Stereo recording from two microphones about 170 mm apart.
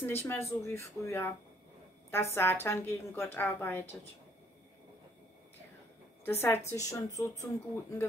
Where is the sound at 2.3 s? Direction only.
15° left (ahead or behind).